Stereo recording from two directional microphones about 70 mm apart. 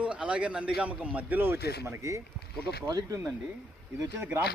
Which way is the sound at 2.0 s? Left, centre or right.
Right.